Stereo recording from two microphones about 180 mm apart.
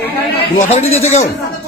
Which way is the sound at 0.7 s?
35° left (ahead or behind).